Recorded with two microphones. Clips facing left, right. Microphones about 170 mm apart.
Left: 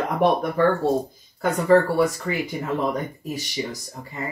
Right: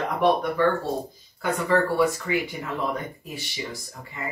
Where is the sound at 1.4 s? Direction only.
40° left (ahead or behind).